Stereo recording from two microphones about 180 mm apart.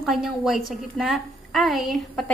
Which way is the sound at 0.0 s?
Centre (ahead or behind).